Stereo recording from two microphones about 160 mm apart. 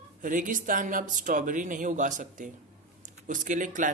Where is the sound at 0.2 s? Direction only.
55° right (ahead or behind).